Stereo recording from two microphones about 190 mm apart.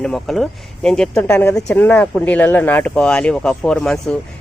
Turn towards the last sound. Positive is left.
turn(degrees=5)  # may be behind; listen again after turning